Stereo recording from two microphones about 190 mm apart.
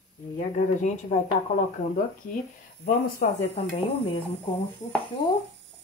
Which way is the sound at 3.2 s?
50° left (ahead or behind).